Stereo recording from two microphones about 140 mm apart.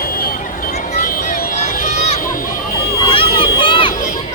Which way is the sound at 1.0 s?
90° left.